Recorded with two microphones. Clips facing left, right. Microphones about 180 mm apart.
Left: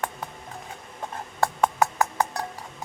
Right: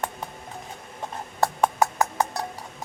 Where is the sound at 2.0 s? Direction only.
20° right (ahead or behind).